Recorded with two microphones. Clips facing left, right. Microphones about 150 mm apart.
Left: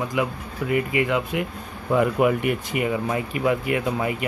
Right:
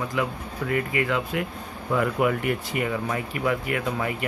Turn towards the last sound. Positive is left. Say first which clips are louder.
# left 3 dB
turn(degrees=20)  # may be behind; listen again after turning